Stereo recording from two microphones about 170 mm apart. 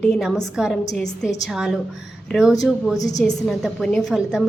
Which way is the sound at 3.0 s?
20° left (ahead or behind).